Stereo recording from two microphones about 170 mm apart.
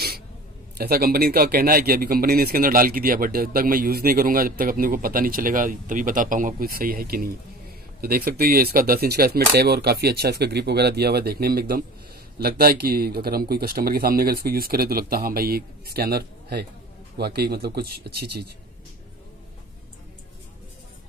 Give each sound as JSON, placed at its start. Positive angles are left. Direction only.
{"t": 0.7, "sound": "speech", "side_deg": -60}